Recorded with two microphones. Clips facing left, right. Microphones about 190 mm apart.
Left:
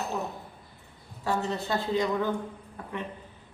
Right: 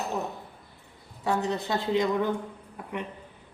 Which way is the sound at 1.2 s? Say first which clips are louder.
Right 2 dB; 20° right (ahead or behind).